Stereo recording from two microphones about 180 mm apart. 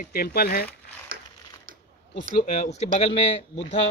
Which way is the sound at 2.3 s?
40° left (ahead or behind).